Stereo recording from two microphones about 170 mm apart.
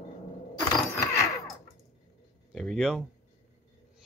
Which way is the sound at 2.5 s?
Centre (ahead or behind).